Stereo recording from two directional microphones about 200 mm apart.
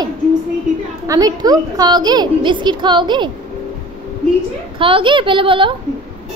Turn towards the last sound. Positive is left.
turn(degrees=-25)  # may be behind; listen again after turning